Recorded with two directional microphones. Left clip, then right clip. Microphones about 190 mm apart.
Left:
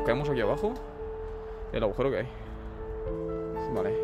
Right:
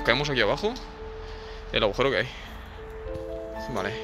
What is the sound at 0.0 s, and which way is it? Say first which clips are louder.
Speech: right 4 dB; 15° left (ahead or behind).